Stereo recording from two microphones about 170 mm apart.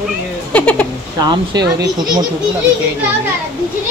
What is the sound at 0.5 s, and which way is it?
Speech, 10° left (ahead or behind).